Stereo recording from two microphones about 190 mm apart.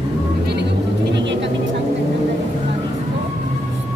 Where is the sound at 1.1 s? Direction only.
70° right (ahead or behind).